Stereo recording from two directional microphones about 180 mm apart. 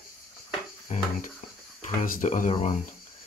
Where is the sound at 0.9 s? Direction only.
40° left (ahead or behind).